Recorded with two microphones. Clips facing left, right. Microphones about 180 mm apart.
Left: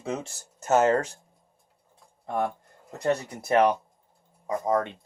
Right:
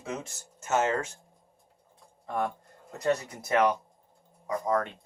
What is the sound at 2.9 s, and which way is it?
Speech, 30° left (ahead or behind).